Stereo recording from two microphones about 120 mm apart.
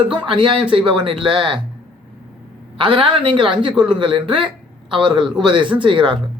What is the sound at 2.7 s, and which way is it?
Speech, 45° right (ahead or behind).